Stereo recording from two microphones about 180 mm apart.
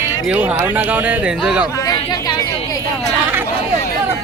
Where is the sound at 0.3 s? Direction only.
10° right (ahead or behind).